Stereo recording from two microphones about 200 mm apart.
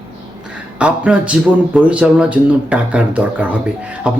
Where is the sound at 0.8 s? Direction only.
5° right (ahead or behind).